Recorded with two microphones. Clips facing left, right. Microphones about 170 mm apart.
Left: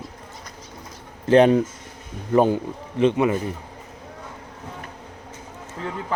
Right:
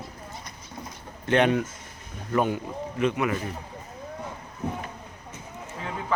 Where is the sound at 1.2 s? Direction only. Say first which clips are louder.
Left 7 dB; 35° left (ahead or behind).